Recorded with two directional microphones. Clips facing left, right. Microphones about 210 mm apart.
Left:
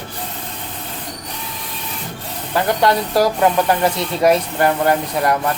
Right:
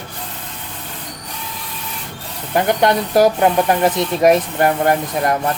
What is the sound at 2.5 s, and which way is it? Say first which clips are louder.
Speech: right 1 dB; 20° right (ahead or behind).